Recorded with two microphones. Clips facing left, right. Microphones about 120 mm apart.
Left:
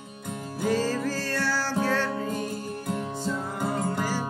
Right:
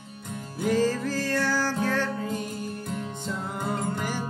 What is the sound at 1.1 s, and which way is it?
Music, 15° right (ahead or behind).